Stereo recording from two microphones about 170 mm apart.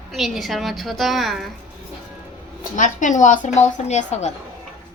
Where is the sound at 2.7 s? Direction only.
50° left (ahead or behind).